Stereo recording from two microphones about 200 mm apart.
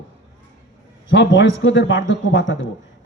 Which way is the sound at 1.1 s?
65° left (ahead or behind).